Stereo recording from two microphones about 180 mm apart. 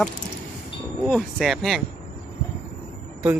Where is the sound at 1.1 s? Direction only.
Centre (ahead or behind).